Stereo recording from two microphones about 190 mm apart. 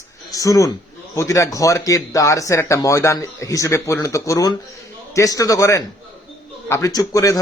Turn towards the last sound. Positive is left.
turn(degrees=20)  # may be behind; listen again after turning